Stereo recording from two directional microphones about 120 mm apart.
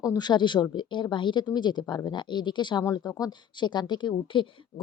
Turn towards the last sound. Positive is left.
turn(degrees=45)  # may be behind; listen again after turning